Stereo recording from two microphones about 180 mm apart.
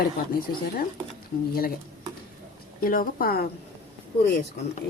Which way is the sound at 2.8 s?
50° left (ahead or behind).